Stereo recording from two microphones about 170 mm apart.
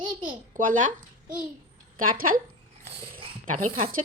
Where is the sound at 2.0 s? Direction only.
55° right (ahead or behind).